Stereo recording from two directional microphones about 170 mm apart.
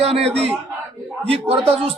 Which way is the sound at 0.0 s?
35° right (ahead or behind).